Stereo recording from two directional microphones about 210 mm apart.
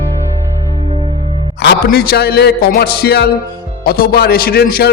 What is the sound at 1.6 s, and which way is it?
A man's voice, 50° left (ahead or behind).